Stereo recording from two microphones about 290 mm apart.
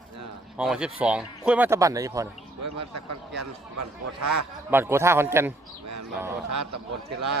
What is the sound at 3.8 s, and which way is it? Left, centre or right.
Speech, right.